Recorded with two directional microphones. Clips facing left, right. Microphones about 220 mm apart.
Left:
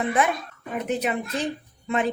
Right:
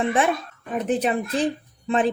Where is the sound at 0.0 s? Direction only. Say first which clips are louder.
Right 2 dB; 30° right (ahead or behind).